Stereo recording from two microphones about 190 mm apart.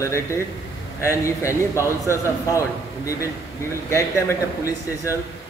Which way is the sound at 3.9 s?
15° left (ahead or behind).